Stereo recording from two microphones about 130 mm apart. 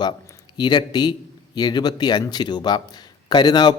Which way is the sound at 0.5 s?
35° left (ahead or behind).